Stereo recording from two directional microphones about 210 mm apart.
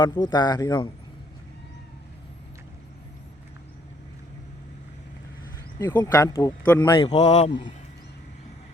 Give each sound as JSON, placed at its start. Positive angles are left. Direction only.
{"t": 0.0, "sound": "speech", "side_deg": 20}
{"t": 5.8, "sound": "speech", "side_deg": 10}